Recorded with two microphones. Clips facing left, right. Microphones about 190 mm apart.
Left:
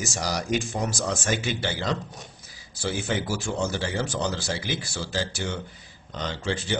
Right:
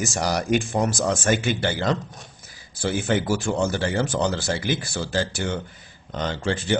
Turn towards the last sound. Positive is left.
turn(degrees=-55)  # may be behind; listen again after turning